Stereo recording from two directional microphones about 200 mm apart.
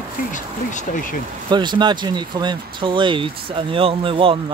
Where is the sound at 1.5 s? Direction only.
20° right (ahead or behind).